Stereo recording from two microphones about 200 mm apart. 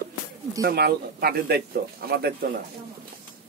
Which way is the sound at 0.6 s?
50° right (ahead or behind).